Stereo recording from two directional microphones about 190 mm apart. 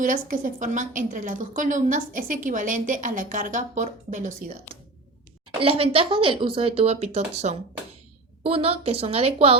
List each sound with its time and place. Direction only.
0.0 s a woman's voice: 45° right (ahead or behind)
5.5 s a woman's voice: 30° right (ahead or behind)